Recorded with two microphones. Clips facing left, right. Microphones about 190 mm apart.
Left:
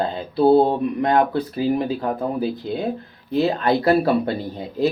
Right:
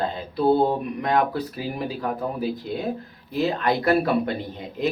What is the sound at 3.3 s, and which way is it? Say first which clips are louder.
Speech: left 4 dB; 30° left (ahead or behind).